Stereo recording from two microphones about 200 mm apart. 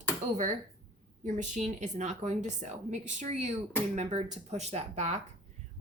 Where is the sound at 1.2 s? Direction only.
35° right (ahead or behind).